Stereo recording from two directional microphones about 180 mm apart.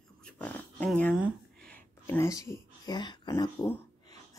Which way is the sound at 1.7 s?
15° left (ahead or behind).